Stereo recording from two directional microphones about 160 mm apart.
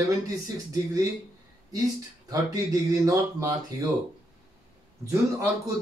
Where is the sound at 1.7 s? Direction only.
25° right (ahead or behind).